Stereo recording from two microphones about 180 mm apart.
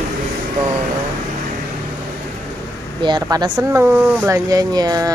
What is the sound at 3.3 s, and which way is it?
Speech, 20° right (ahead or behind).